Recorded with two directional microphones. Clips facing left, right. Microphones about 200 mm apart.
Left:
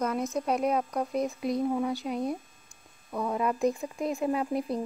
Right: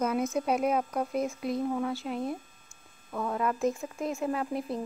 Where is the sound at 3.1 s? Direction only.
10° left (ahead or behind).